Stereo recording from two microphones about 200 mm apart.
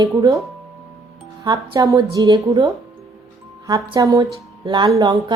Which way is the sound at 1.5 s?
20° right (ahead or behind).